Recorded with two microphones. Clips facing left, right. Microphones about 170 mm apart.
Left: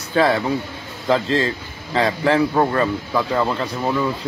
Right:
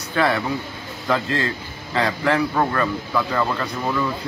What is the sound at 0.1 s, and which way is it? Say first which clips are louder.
A man's voice: left 3 dB; 30° left (ahead or behind).